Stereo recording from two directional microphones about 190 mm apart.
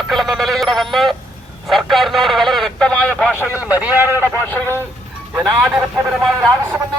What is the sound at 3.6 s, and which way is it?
Speech, 10° right (ahead or behind).